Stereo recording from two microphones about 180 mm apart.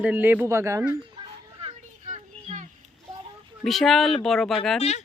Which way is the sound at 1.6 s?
40° right (ahead or behind).